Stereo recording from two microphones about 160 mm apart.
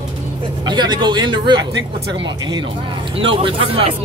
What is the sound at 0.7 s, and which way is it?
Speech, 30° right (ahead or behind).